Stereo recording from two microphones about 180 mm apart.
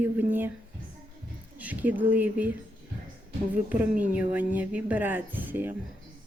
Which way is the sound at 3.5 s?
10° right (ahead or behind).